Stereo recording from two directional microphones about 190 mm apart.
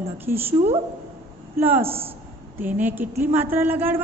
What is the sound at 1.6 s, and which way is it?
A woman's voice, 10° right (ahead or behind).